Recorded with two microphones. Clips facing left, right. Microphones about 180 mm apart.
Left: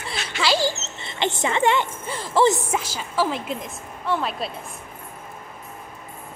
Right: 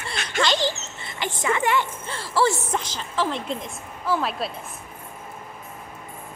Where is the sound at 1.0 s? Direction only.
25° left (ahead or behind); by 4.5 s centre (ahead or behind).